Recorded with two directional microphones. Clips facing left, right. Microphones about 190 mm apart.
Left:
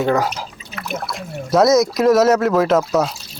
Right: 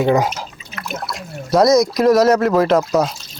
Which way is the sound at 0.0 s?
15° right (ahead or behind).